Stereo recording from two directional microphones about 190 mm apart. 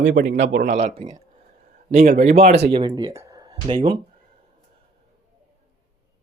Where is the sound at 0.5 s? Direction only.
40° right (ahead or behind).